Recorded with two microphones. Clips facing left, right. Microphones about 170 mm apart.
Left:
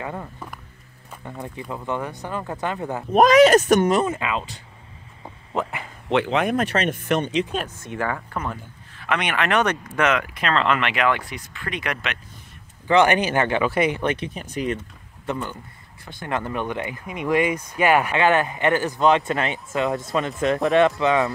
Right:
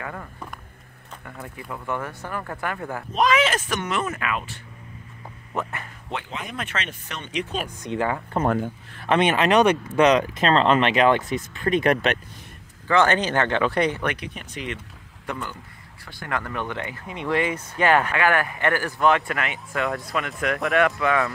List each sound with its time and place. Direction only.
0.0 s speech: 20° left (ahead or behind)
3.3 s speech: 40° left (ahead or behind)
4.0 s speech: 25° left (ahead or behind)
6.0 s speech: 80° left
6.5 s speech: 40° left (ahead or behind)
7.6 s speech: 15° right (ahead or behind)
11.9 s speech: 40° right (ahead or behind)
12.8 s speech: 15° left (ahead or behind)
13.9 s speech: 25° left (ahead or behind)
14.5 s speech: 40° left (ahead or behind)
15.2 s speech: 20° left (ahead or behind)
18.1 s speech: 20° left (ahead or behind)